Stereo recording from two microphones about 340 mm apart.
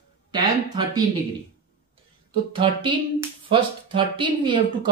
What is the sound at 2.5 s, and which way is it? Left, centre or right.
Speech, centre.